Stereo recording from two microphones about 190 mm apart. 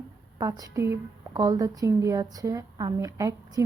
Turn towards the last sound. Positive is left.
turn(degrees=-15)  # may be behind; listen again after turning